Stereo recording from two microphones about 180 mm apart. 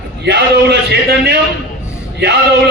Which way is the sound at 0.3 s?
70° right (ahead or behind).